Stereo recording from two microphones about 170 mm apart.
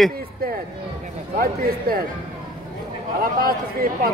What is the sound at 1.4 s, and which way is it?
Speech, 60° right (ahead or behind).